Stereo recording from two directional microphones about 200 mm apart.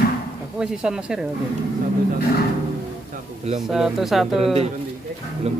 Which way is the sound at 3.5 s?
Centre (ahead or behind).